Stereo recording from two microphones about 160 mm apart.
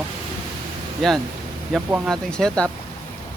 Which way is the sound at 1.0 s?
Centre (ahead or behind).